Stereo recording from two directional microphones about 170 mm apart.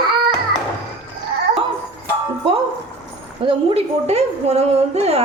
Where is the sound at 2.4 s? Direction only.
35° right (ahead or behind).